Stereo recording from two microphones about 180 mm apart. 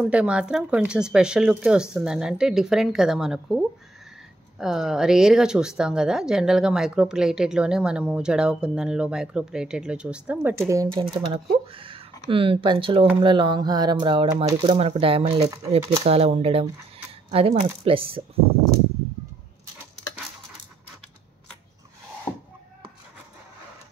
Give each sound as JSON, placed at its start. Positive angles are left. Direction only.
{"t": 0.0, "sound": "speech", "side_deg": -5}
{"t": 10.7, "sound": "speech", "side_deg": -20}
{"t": 11.2, "sound": "speech", "side_deg": -30}
{"t": 16.0, "sound": "speech", "side_deg": -35}